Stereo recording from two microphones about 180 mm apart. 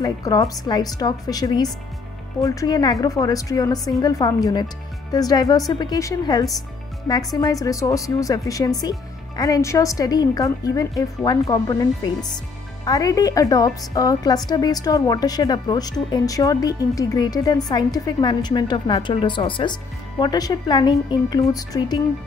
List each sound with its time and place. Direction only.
0.0 s a woman's voice: 20° left (ahead or behind)